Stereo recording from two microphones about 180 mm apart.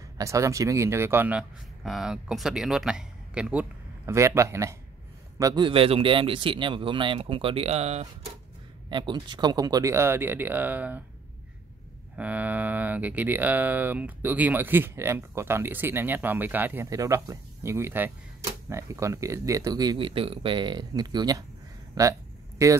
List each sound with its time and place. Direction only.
0.2 s speech: 15° right (ahead or behind); by 8.1 s 35° right (ahead or behind)
8.8 s speech: 25° right (ahead or behind); by 11.1 s 10° right (ahead or behind)
12.2 s speech: 10° right (ahead or behind)